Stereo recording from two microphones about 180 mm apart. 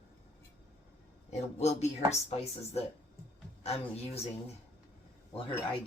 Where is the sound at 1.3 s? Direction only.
35° left (ahead or behind).